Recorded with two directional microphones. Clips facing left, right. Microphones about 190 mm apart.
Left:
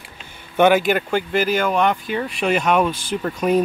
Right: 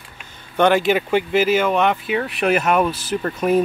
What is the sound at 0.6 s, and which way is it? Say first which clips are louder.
Speech: left 1 dB; 5° left (ahead or behind).